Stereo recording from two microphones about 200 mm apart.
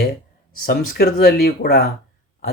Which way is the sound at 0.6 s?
50° left (ahead or behind).